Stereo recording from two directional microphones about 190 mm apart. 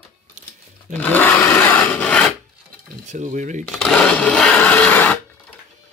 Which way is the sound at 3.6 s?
5° left (ahead or behind).